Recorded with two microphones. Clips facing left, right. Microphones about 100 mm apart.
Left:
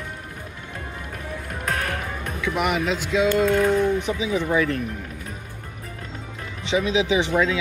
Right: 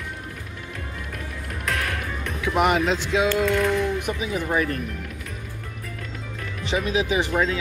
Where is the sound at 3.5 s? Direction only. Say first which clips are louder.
Left 3 dB; 45° left (ahead or behind).